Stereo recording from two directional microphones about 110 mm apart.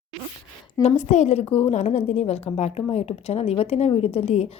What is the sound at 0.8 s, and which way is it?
A woman's voice, 85° left.